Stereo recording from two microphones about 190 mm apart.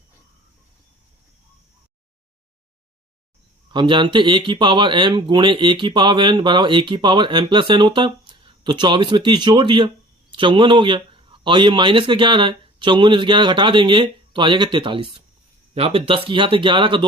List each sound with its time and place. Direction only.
3.7 s speech: 25° right (ahead or behind)